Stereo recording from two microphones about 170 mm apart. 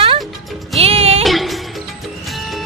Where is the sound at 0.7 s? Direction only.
35° right (ahead or behind).